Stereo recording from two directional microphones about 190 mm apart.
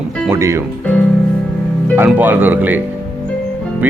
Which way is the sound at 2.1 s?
10° right (ahead or behind).